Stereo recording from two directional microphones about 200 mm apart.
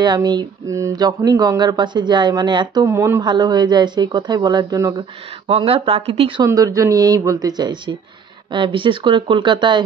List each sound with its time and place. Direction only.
0.0 s speech: 20° right (ahead or behind)